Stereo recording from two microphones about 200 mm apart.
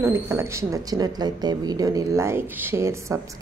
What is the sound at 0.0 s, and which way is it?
Speech, 15° right (ahead or behind).